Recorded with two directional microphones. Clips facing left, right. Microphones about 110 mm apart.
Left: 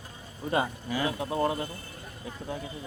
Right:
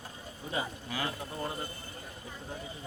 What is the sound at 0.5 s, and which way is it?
Speech, 75° left (ahead or behind).